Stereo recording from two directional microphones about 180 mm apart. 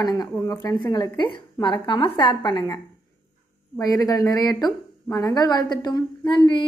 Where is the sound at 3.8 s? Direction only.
20° left (ahead or behind).